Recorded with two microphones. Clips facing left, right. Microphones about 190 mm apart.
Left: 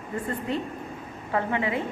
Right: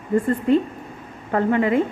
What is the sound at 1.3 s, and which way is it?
Speech, 50° right (ahead or behind).